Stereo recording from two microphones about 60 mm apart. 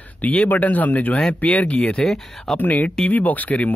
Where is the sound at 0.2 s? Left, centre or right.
Left.